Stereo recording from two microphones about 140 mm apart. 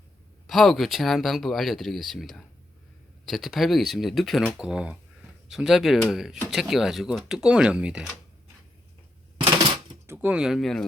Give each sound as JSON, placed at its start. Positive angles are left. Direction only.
{"t": 0.4, "sound": "speech", "side_deg": 0}
{"t": 10.1, "sound": "speech", "side_deg": -10}